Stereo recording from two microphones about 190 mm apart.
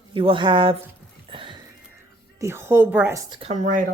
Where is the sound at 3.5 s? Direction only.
40° right (ahead or behind).